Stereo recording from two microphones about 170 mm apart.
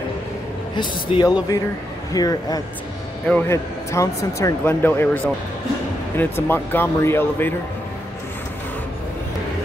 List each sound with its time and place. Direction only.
0.7 s a man's voice: 25° left (ahead or behind)